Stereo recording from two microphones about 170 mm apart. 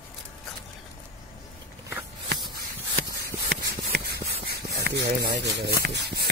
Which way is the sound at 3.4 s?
65° right (ahead or behind).